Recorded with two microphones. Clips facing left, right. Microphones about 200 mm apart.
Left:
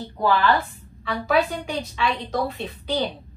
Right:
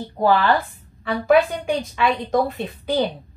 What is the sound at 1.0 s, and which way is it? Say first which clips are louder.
A woman's voice: right 5 dB; 50° right (ahead or behind).